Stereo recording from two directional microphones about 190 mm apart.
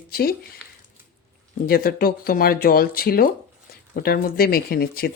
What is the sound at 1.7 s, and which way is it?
Speech, 50° left (ahead or behind).